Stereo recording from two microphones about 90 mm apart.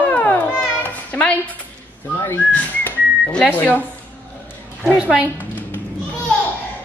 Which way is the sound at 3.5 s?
20° left (ahead or behind).